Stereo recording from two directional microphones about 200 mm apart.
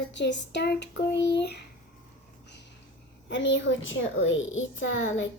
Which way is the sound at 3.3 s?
65° left (ahead or behind).